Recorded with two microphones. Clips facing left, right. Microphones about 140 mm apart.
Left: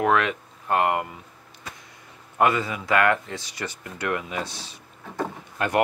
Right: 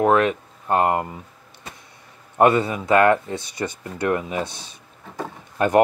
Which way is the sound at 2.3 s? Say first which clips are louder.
Right 5 dB; 30° right (ahead or behind).